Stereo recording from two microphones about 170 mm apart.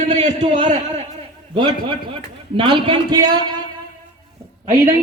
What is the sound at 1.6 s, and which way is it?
A man's voice, 30° right (ahead or behind).